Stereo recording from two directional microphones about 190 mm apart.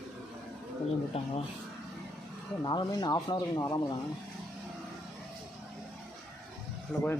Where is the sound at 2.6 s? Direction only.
20° left (ahead or behind).